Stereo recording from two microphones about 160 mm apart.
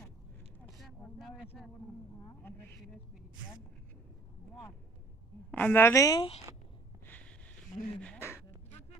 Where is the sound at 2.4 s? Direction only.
15° left (ahead or behind).